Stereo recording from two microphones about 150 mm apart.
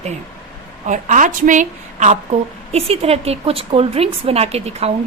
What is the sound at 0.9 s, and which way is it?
A woman's voice, 55° right (ahead or behind).